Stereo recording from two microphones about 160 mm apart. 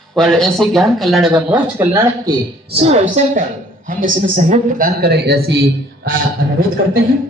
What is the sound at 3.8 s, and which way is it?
Speech, 55° right (ahead or behind).